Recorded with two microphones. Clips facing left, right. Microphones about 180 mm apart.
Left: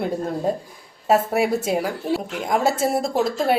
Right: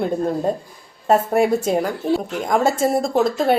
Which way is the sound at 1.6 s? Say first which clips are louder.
Right 3 dB; 5° left (ahead or behind).